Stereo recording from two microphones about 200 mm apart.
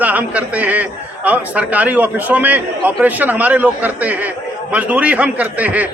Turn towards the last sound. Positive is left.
turn(degrees=-10)  # may be behind; listen again after turning